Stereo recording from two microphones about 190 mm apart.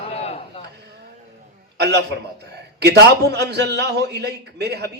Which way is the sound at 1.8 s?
60° right (ahead or behind).